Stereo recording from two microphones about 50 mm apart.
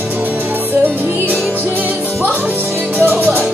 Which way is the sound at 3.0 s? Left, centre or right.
Right.